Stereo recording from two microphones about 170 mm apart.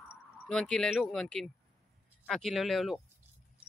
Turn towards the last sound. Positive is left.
turn(degrees=0)  # may be behind; listen again after turning